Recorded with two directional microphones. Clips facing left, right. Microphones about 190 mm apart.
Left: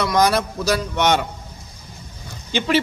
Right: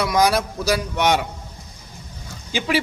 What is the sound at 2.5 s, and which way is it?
Speech, 5° right (ahead or behind).